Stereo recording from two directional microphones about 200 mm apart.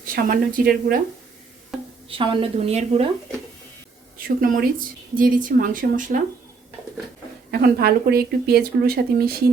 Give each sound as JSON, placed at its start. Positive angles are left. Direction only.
{"t": 0.0, "sound": "speech", "side_deg": -45}
{"t": 2.0, "sound": "a woman's voice", "side_deg": -25}
{"t": 4.4, "sound": "speech", "side_deg": -45}
{"t": 7.5, "sound": "speech", "side_deg": -50}